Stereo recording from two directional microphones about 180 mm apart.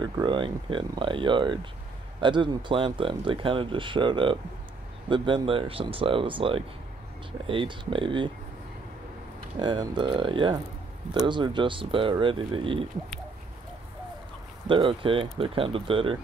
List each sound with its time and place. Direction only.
0.0 s speech: 25° right (ahead or behind)
9.6 s speech: 25° right (ahead or behind)
14.7 s speech: 30° right (ahead or behind)